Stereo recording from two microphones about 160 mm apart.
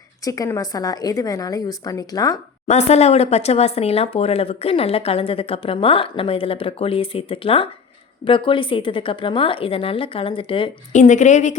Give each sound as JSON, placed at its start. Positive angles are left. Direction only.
{"t": 0.3, "sound": "a woman's voice", "side_deg": 20}
{"t": 2.6, "sound": "speech", "side_deg": 45}
{"t": 10.9, "sound": "a woman's voice", "side_deg": 50}